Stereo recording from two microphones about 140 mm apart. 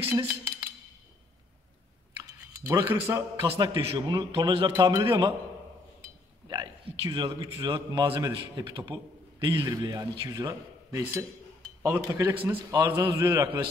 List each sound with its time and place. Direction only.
0.1 s a sound: 20° right (ahead or behind)
2.6 s a man's voice: 15° right (ahead or behind)
3.5 s a man's voice: 30° right (ahead or behind)
6.5 s a man's voice: 30° right (ahead or behind)
12.7 s a man's voice: 35° right (ahead or behind)
13.0 s a man's voice: 20° right (ahead or behind)